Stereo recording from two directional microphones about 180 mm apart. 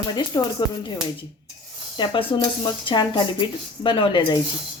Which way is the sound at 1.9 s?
25° left (ahead or behind).